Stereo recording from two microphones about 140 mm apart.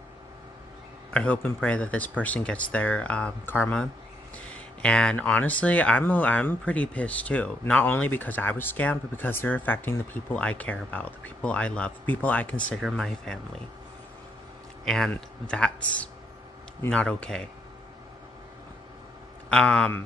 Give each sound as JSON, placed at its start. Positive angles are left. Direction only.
{"t": 1.1, "sound": "speech", "side_deg": 10}
{"t": 14.9, "sound": "speech", "side_deg": 5}
{"t": 19.5, "sound": "speech", "side_deg": 10}